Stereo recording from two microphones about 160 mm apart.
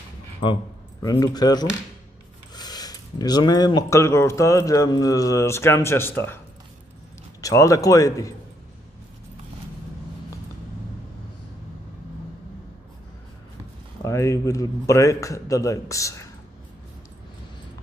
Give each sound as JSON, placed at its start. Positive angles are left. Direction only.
{"t": 1.2, "sound": "speech", "side_deg": 25}
{"t": 7.4, "sound": "speech", "side_deg": 20}
{"t": 14.0, "sound": "speech", "side_deg": 20}